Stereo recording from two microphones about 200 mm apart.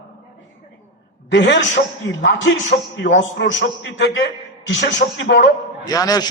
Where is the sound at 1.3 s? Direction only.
60° left (ahead or behind).